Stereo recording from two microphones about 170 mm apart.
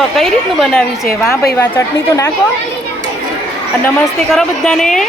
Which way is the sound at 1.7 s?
15° left (ahead or behind).